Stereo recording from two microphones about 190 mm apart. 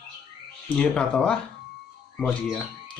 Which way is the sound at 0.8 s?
5° left (ahead or behind).